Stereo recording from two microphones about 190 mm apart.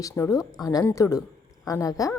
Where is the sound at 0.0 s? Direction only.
15° left (ahead or behind).